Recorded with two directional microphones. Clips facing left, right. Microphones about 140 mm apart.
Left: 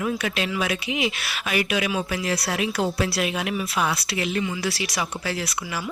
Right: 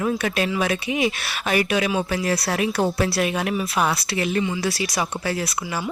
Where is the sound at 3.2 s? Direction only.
40° right (ahead or behind).